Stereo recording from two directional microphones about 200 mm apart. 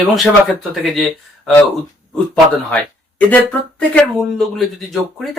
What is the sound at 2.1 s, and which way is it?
Speech, 5° left (ahead or behind).